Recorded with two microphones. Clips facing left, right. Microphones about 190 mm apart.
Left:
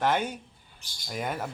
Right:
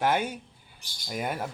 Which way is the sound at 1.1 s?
5° right (ahead or behind).